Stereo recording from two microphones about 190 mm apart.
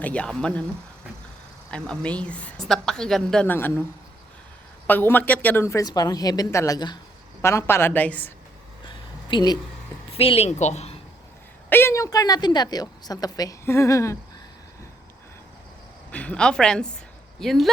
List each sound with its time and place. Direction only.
0.0 s speech: 5° left (ahead or behind)
1.7 s a woman's voice: 5° left (ahead or behind)
4.9 s speech: 10° left (ahead or behind)
9.3 s a woman's voice: 20° left (ahead or behind)
11.7 s a woman's voice: 15° left (ahead or behind)
16.1 s a woman's voice: 5° left (ahead or behind)